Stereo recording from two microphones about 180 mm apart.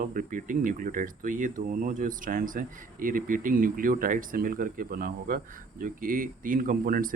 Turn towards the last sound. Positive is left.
turn(degrees=-50)  # may be behind; listen again after turning